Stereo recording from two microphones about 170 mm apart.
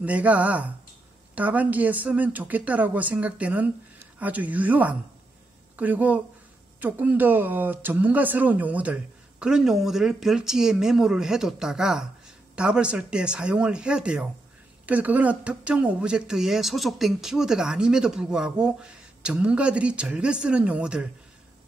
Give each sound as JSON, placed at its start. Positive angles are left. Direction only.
{"t": 0.0, "sound": "a woman's voice", "side_deg": -10}